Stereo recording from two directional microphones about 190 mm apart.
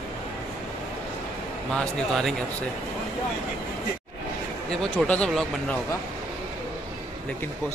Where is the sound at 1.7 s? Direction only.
Centre (ahead or behind).